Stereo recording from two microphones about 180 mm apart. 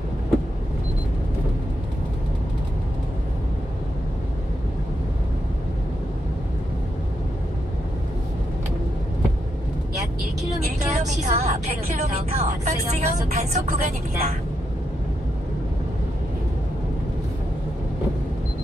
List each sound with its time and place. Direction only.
10.9 s a woman's voice: 40° right (ahead or behind)